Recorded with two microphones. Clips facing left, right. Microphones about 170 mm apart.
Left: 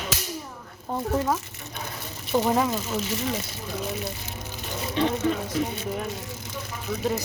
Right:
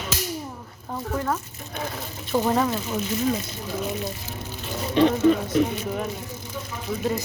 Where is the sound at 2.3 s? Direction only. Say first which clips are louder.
Right 1 dB; 5° left (ahead or behind).